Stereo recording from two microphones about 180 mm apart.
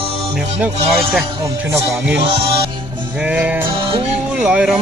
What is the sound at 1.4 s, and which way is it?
Speech, 15° right (ahead or behind).